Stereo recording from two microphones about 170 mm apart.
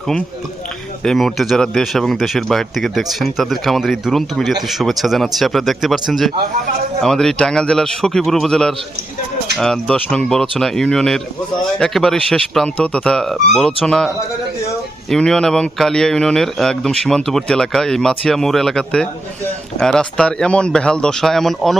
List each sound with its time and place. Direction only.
1.0 s a man's voice: centre (ahead or behind)
15.1 s a man's voice: 5° left (ahead or behind)